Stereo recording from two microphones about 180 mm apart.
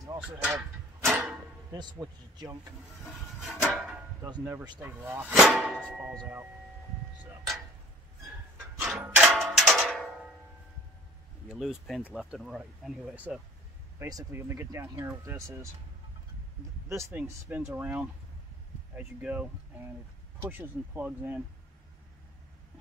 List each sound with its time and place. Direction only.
0.2 s a sound: 5° right (ahead or behind)
1.7 s a man's voice: 20° right (ahead or behind)
3.3 s a sound: centre (ahead or behind)
4.2 s speech: 15° right (ahead or behind)
8.5 s music: 10° right (ahead or behind)
11.4 s speech: centre (ahead or behind)
13.9 s speech: 15° right (ahead or behind)
16.9 s speech: 10° right (ahead or behind)